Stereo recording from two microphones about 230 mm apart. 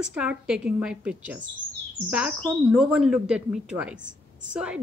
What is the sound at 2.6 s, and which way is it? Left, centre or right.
Speech, centre.